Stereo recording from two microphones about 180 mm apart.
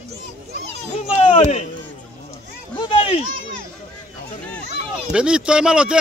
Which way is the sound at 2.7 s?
30° left (ahead or behind).